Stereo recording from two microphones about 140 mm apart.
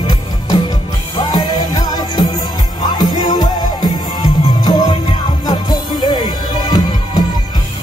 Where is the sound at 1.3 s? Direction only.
30° left (ahead or behind).